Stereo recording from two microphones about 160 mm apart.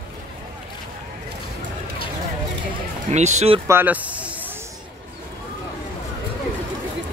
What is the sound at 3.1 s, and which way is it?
Speech, 45° right (ahead or behind).